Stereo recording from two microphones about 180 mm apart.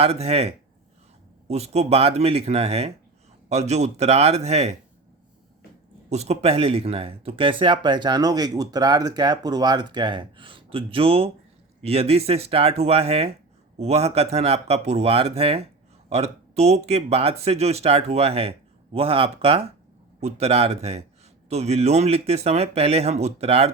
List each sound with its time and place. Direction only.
0.0 s speech: 35° right (ahead or behind)
6.1 s speech: 35° right (ahead or behind)